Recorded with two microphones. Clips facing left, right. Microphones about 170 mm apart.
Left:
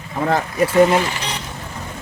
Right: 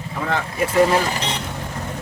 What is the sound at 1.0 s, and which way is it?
Speech, 40° right (ahead or behind).